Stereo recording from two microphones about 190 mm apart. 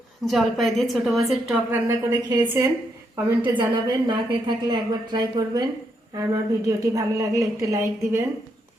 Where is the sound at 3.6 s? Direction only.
25° right (ahead or behind).